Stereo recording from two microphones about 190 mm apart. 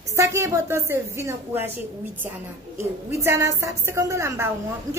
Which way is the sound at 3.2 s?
15° right (ahead or behind).